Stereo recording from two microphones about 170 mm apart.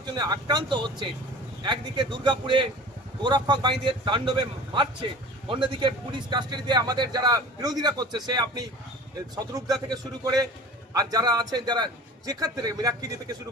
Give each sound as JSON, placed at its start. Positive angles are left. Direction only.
{"t": 0.0, "sound": "a man's voice", "side_deg": -25}